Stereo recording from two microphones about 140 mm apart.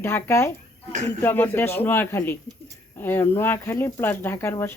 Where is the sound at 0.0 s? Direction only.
20° left (ahead or behind).